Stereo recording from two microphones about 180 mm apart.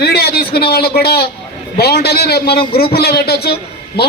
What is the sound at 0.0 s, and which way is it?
A man's voice, 60° left (ahead or behind).